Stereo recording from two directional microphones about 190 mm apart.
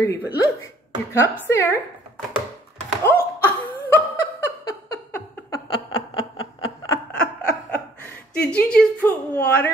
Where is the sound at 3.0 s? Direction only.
10° left (ahead or behind).